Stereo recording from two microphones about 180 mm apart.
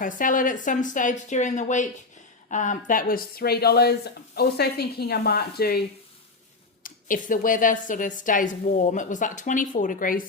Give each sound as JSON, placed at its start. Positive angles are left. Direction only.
{"t": 0.0, "sound": "a woman's voice", "side_deg": 45}
{"t": 6.8, "sound": "a woman's voice", "side_deg": 50}